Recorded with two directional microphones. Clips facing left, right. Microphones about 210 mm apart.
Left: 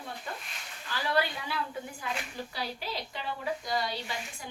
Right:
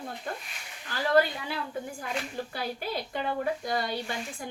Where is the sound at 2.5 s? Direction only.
50° right (ahead or behind).